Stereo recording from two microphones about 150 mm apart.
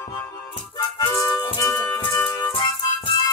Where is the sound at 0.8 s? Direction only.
30° left (ahead or behind).